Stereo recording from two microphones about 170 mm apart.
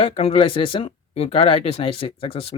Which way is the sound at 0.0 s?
35° left (ahead or behind).